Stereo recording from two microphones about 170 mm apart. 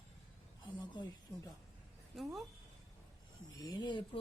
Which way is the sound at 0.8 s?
25° left (ahead or behind).